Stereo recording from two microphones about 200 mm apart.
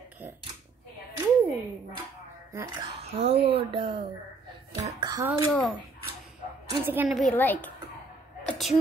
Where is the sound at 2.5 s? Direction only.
20° right (ahead or behind).